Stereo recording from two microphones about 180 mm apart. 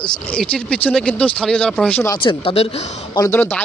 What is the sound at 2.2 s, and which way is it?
Speech, 30° left (ahead or behind).